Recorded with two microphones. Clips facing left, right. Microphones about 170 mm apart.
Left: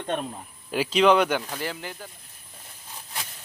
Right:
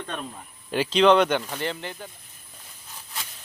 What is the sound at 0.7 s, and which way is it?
Speech, 5° left (ahead or behind).